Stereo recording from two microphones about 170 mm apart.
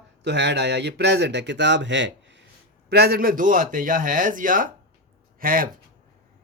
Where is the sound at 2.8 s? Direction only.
70° right (ahead or behind).